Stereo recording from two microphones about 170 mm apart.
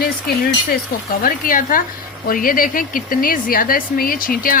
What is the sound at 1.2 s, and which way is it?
Speech, 55° left (ahead or behind).